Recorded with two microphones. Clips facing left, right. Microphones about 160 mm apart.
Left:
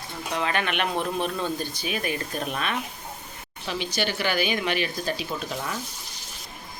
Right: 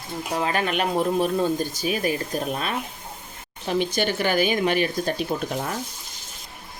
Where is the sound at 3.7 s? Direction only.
50° right (ahead or behind).